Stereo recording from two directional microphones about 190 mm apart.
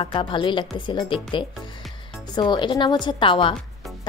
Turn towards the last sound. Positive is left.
turn(degrees=25)  # may be behind; listen again after turning